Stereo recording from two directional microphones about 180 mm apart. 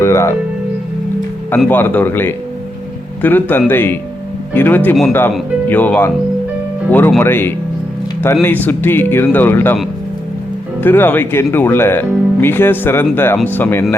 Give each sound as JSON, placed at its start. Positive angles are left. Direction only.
{"t": 0.0, "sound": "speech", "side_deg": 15}
{"t": 1.5, "sound": "speech", "side_deg": 10}
{"t": 7.2, "sound": "speech", "side_deg": 10}
{"t": 10.8, "sound": "speech", "side_deg": 10}